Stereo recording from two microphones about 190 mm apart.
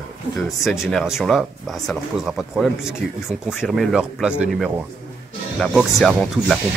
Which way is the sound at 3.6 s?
5° right (ahead or behind).